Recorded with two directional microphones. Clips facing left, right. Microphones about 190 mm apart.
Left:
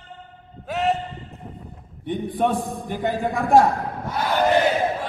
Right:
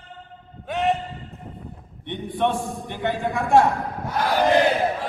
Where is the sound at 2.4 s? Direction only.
40° left (ahead or behind).